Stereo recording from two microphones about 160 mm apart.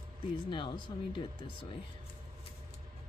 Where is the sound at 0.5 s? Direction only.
30° left (ahead or behind).